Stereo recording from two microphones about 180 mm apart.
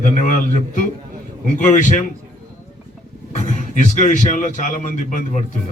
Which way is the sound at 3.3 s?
40° left (ahead or behind).